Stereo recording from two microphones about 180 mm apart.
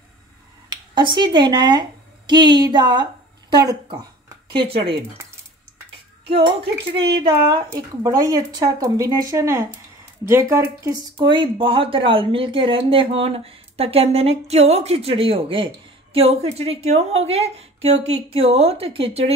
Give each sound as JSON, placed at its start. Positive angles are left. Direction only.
{"t": 0.7, "sound": "speech", "side_deg": -25}
{"t": 6.2, "sound": "speech", "side_deg": -30}
{"t": 7.0, "sound": "speech", "side_deg": -65}
{"t": 7.2, "sound": "speech", "side_deg": -25}